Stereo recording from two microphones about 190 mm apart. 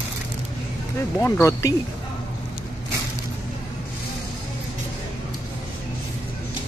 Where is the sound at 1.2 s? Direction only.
15° left (ahead or behind).